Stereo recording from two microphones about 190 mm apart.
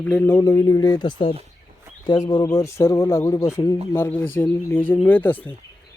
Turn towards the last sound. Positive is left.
turn(degrees=10)  # may be behind; listen again after turning